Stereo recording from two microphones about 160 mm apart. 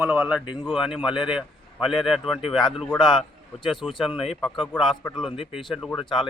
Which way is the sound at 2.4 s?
30° left (ahead or behind).